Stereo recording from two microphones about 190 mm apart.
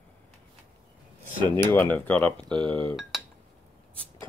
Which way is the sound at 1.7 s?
10° left (ahead or behind).